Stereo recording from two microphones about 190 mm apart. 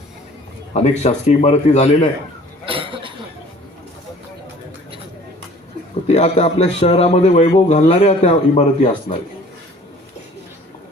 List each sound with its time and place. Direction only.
0.7 s a man's voice: 35° left (ahead or behind)
2.6 s a sound: 25° right (ahead or behind)
6.1 s a man's voice: 35° left (ahead or behind)